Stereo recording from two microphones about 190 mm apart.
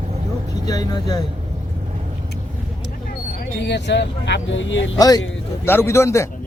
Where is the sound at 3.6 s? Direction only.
65° left (ahead or behind).